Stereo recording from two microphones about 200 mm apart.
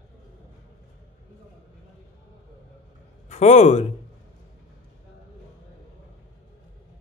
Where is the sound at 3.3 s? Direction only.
35° left (ahead or behind).